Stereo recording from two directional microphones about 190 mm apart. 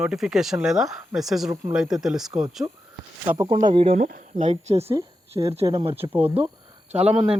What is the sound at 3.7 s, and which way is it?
Speech, 30° right (ahead or behind).